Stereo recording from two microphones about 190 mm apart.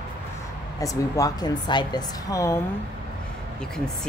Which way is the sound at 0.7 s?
20° left (ahead or behind).